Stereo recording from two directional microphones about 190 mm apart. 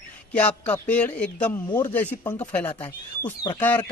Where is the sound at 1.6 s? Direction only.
25° left (ahead or behind).